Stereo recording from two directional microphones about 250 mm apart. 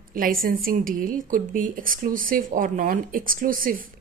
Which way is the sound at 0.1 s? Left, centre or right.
Right.